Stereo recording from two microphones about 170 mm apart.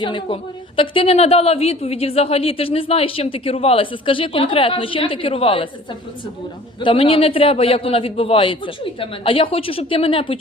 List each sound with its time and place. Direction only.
0.0 s a woman's voice: 30° left (ahead or behind)
6.7 s a woman's voice: 30° left (ahead or behind)